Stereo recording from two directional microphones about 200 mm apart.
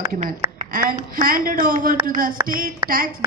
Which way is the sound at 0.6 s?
45° right (ahead or behind).